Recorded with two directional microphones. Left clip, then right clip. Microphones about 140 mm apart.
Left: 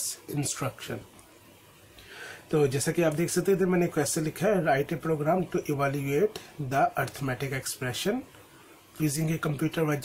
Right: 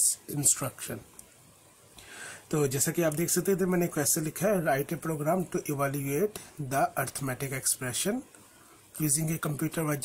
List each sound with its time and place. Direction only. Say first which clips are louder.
0.3 s speech: right 1 dB; 30° right (ahead or behind)
2.1 s speech: left 4 dB; 35° right (ahead or behind)